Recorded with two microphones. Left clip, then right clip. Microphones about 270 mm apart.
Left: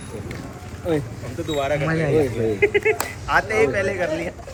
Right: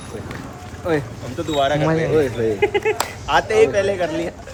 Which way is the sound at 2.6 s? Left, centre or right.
Right.